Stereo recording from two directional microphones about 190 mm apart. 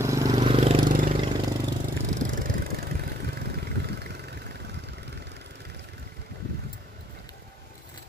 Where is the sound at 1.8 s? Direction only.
45° right (ahead or behind); by 5.8 s 60° right (ahead or behind).